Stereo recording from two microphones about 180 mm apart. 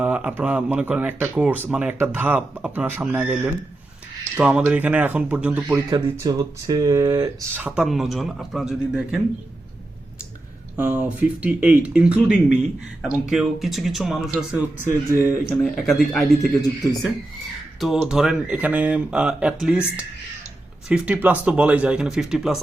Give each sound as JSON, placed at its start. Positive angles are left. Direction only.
{"t": 0.0, "sound": "speech", "side_deg": -5}
{"t": 5.9, "sound": "speech", "side_deg": -20}
{"t": 7.9, "sound": "speech", "side_deg": 0}
{"t": 10.9, "sound": "speech", "side_deg": -10}
{"t": 14.8, "sound": "speech", "side_deg": -15}
{"t": 15.6, "sound": "speech", "side_deg": 0}
{"t": 17.7, "sound": "speech", "side_deg": 0}